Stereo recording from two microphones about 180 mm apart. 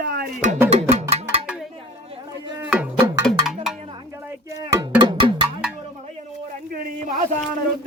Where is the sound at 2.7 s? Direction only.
10° right (ahead or behind).